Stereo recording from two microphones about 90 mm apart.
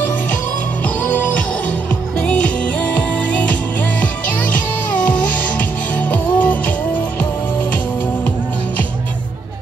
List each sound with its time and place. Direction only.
0.8 s music: 15° left (ahead or behind)